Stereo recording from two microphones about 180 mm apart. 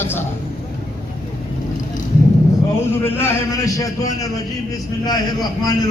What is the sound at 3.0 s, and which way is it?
A man's voice, 10° left (ahead or behind).